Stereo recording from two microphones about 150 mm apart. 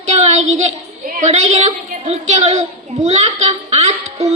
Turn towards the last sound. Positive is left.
turn(degrees=-45)  # may be behind; listen again after turning